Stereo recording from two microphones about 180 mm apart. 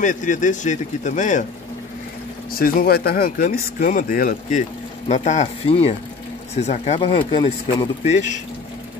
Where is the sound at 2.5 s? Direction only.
55° left (ahead or behind); by 8.4 s 35° left (ahead or behind).